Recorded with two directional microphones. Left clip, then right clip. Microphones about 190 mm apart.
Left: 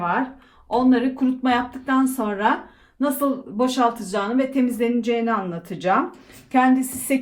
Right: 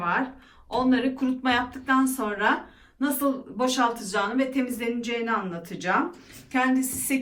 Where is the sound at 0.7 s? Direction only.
50° left (ahead or behind).